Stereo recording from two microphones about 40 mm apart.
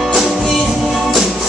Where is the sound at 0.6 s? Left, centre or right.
Centre.